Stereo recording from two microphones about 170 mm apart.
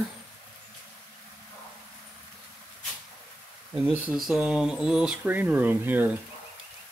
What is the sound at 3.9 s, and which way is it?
Speech, 5° right (ahead or behind).